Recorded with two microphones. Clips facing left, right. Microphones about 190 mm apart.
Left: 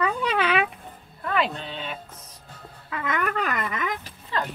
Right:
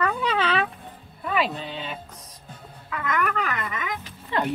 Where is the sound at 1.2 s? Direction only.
5° right (ahead or behind).